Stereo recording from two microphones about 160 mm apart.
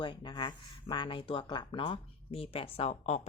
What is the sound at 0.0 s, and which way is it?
Speech, 30° left (ahead or behind).